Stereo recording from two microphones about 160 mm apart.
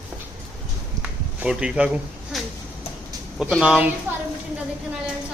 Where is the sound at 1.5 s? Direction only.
5° right (ahead or behind).